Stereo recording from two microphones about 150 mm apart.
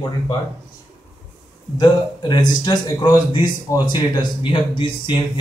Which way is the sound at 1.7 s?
30° left (ahead or behind).